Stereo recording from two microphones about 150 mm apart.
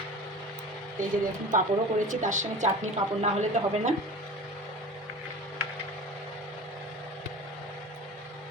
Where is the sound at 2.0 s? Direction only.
55° right (ahead or behind).